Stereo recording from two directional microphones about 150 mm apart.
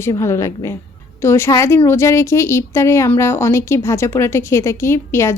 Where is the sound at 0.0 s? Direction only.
20° left (ahead or behind).